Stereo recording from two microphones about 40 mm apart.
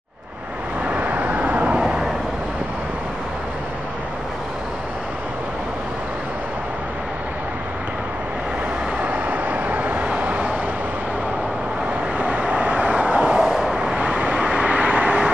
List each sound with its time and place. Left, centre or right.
0.8 s vehicle: right
9.0 s vehicle: right
12.2 s vehicle: right
13.4 s vehicle: centre
14.1 s vehicle: right
14.4 s vehicle: right